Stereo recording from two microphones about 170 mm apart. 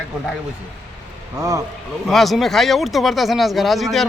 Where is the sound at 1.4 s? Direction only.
15° right (ahead or behind).